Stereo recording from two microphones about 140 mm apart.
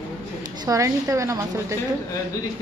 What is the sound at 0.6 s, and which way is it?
A woman's voice, 25° right (ahead or behind).